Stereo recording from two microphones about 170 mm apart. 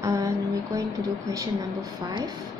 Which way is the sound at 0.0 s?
20° right (ahead or behind).